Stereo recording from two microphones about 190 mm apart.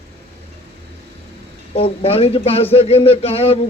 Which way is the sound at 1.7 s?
30° left (ahead or behind).